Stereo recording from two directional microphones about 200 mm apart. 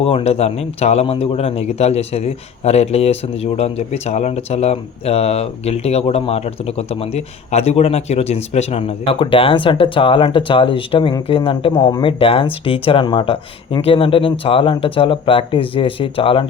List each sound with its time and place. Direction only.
0.0 s a man's voice: 30° left (ahead or behind)